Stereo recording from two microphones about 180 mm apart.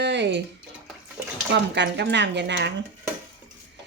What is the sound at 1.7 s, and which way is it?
A woman's voice, 75° right (ahead or behind).